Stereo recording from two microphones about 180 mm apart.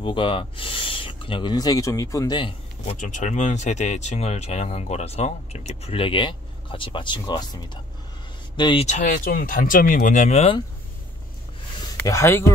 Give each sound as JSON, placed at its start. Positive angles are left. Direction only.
{"t": 0.0, "sound": "speech", "side_deg": 30}
{"t": 2.9, "sound": "speech", "side_deg": 45}
{"t": 8.8, "sound": "speech", "side_deg": 45}
{"t": 12.0, "sound": "speech", "side_deg": 15}